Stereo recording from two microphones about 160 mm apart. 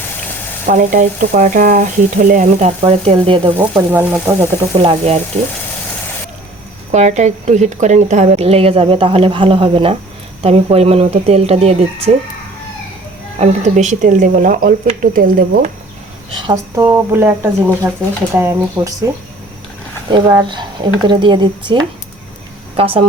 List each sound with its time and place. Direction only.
0.7 s speech: 55° right (ahead or behind); by 3.8 s 30° right (ahead or behind)
3.9 s speech: 15° right (ahead or behind)
4.8 s a woman's voice: 35° right (ahead or behind)
6.9 s a woman's voice: 45° right (ahead or behind)
13.4 s speech: 45° right (ahead or behind); by 15.6 s 60° right (ahead or behind)
16.3 s speech: 25° right (ahead or behind)
20.1 s speech: 30° right (ahead or behind)
22.8 s a woman's voice: 35° right (ahead or behind)